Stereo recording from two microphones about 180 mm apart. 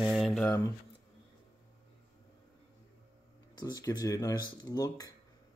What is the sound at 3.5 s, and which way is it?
Speech, 20° left (ahead or behind).